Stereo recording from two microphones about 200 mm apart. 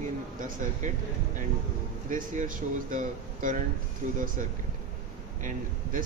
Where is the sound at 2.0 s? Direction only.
40° right (ahead or behind).